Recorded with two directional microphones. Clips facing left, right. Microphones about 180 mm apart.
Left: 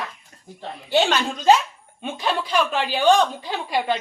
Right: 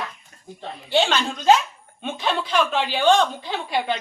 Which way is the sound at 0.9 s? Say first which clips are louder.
Left 1 dB; 15° left (ahead or behind).